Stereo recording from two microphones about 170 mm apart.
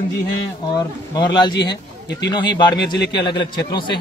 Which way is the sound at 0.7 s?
25° left (ahead or behind).